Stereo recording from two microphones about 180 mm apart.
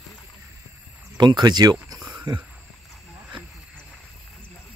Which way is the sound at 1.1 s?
25° right (ahead or behind).